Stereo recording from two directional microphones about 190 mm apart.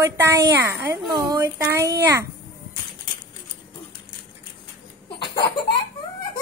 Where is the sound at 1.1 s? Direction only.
15° right (ahead or behind).